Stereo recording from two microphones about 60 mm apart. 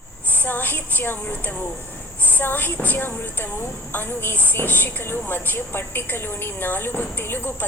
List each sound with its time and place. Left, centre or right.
0.3 s a woman's voice: left